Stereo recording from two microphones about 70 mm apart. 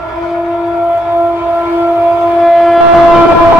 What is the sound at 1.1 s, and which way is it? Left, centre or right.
Civil defense siren, centre.